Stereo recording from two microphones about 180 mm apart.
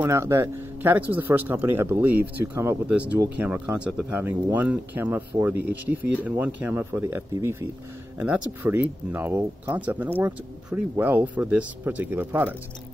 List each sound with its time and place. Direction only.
0.0 s speech: 15° right (ahead or behind)